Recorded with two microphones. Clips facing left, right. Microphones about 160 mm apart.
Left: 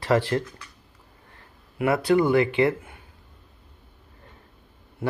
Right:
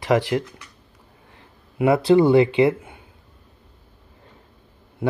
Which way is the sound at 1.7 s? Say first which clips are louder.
Right 5 dB; 25° right (ahead or behind).